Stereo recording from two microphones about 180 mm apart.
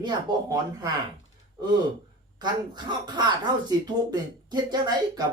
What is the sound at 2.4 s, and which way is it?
Speech, 25° right (ahead or behind).